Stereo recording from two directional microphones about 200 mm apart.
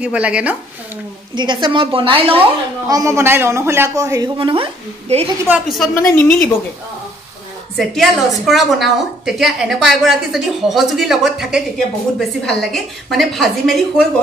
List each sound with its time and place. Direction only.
0.0 s a woman's voice: 5° right (ahead or behind)
1.3 s a woman's voice: 20° right (ahead or behind)
2.9 s a woman's voice: 15° right (ahead or behind)
5.5 s a woman's voice: centre (ahead or behind)
7.7 s a woman's voice: centre (ahead or behind)